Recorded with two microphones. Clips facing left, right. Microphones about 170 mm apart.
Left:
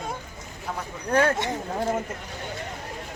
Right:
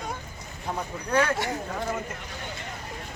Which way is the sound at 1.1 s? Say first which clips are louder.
Left 3 dB; 45° left (ahead or behind).